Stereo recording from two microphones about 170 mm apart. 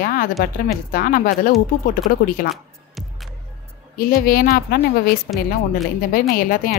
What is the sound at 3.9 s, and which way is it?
Speech, 60° left (ahead or behind).